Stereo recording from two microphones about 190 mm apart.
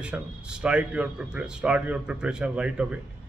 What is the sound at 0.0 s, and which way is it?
A man's voice, 5° right (ahead or behind).